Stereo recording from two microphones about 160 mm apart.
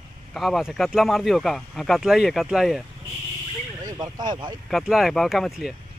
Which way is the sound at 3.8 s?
20° right (ahead or behind).